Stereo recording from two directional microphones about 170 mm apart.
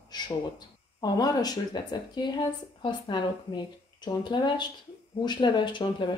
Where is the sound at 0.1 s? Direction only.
25° left (ahead or behind).